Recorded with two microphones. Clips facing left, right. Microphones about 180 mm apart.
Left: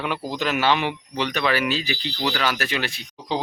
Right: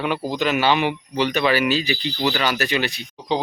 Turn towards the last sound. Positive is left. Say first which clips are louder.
# right 4 dB
turn(degrees=0)  # may be behind; listen again after turning